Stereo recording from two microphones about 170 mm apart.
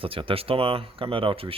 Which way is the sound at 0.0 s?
30° right (ahead or behind).